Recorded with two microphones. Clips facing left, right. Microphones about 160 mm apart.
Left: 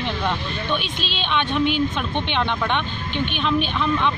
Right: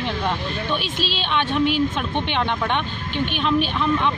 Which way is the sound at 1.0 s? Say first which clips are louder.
Right 1 dB; 40° right (ahead or behind).